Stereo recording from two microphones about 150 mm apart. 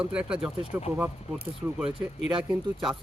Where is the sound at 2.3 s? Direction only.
Centre (ahead or behind).